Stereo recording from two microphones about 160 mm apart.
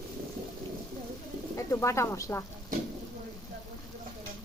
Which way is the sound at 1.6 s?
20° left (ahead or behind).